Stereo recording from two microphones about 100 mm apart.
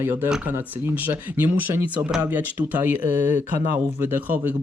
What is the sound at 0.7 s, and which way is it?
Speech, 20° right (ahead or behind).